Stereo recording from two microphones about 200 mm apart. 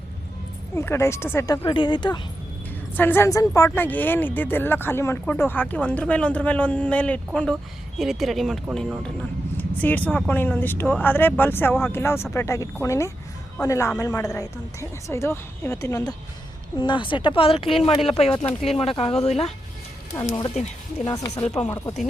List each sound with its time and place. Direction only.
0.8 s speech: 15° left (ahead or behind)
1.6 s speech: 25° left (ahead or behind)
2.9 s speech: 10° left (ahead or behind); by 19.5 s 35° left (ahead or behind)
20.1 s speech: 20° left (ahead or behind)